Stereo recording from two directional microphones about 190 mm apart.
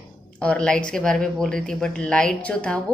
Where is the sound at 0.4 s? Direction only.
5° left (ahead or behind).